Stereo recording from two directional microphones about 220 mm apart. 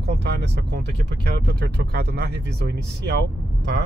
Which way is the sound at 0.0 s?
50° right (ahead or behind).